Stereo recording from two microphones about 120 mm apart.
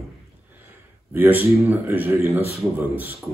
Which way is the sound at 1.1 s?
15° right (ahead or behind).